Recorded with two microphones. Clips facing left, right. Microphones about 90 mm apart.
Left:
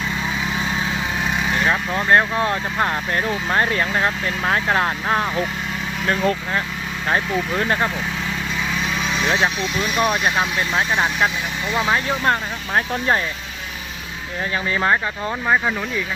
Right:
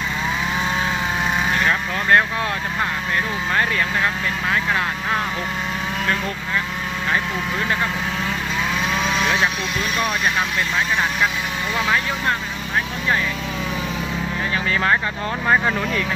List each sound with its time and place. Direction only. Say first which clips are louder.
1.5 s speech: left 1 dB; 20° left (ahead or behind)
9.0 s vehicle: left 1 dB; centre (ahead or behind)
9.6 s speech: left 2 dB; 5° left (ahead or behind)
10.8 s speech: left 2 dB; 30° left (ahead or behind)
14.7 s speech: left 1 dB; 20° left (ahead or behind)